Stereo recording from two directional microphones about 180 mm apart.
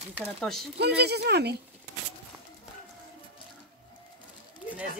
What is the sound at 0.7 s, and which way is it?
Speech, 65° right (ahead or behind).